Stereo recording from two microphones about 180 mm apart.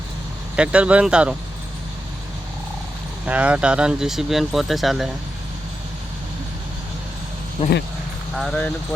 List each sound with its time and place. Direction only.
0.5 s speech: 5° right (ahead or behind)
3.2 s speech: 5° right (ahead or behind)
7.6 s speech: 25° left (ahead or behind)
8.4 s speech: 5° left (ahead or behind)